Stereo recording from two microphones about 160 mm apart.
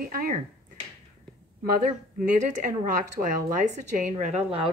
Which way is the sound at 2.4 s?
55° right (ahead or behind).